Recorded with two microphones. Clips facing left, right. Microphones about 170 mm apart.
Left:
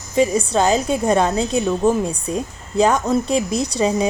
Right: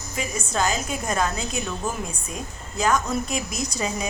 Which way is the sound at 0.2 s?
30° left (ahead or behind).